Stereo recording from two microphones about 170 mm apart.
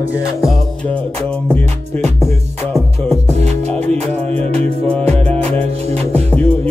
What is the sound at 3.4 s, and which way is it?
Music, 40° right (ahead or behind).